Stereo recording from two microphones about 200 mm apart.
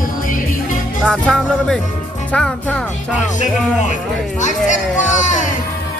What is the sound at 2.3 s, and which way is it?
Speech, 5° left (ahead or behind).